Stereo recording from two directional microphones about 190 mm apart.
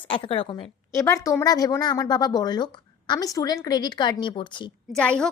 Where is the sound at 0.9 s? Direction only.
15° left (ahead or behind).